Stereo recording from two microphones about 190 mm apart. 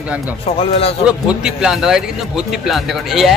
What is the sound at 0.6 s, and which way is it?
Speech, 30° left (ahead or behind).